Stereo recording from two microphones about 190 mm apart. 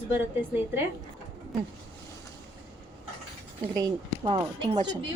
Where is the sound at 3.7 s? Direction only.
25° right (ahead or behind).